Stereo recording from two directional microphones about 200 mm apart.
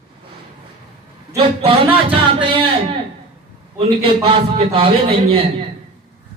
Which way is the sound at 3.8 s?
25° right (ahead or behind).